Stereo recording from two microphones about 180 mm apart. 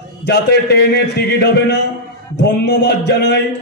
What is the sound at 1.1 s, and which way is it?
A man's voice, 65° left (ahead or behind).